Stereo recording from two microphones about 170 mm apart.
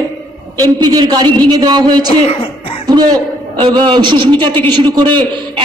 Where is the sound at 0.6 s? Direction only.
25° right (ahead or behind).